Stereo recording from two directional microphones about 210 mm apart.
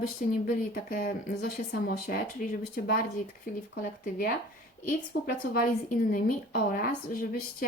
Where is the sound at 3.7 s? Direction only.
45° left (ahead or behind).